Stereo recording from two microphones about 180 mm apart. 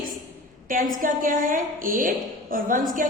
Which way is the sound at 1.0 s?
45° right (ahead or behind).